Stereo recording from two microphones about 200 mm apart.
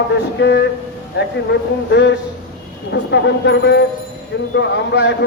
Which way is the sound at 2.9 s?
60° left (ahead or behind).